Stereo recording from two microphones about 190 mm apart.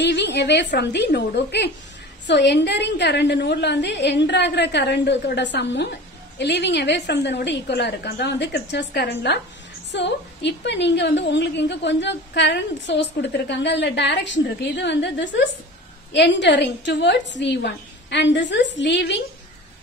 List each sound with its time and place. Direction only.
0.0 s a woman's voice: 65° left (ahead or behind)